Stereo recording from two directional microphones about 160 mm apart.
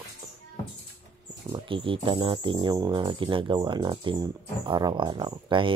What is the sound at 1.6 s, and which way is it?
Speech, 35° right (ahead or behind).